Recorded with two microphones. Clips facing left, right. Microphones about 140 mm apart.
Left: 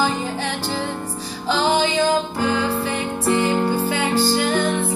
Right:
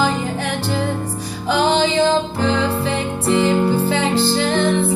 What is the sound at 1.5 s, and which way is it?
Music, 25° right (ahead or behind).